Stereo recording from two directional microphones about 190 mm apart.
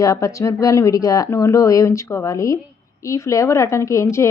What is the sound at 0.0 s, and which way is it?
A woman's voice, 15° left (ahead or behind).